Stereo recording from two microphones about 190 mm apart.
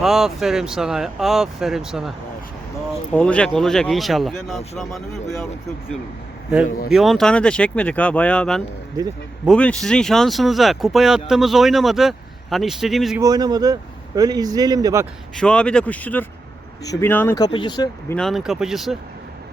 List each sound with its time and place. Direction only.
0.0 s speech: centre (ahead or behind)
6.9 s speech: centre (ahead or behind)
13.1 s speech: 20° right (ahead or behind)
15.4 s speech: 5° left (ahead or behind); by 17.8 s 25° left (ahead or behind)
18.1 s speech: centre (ahead or behind)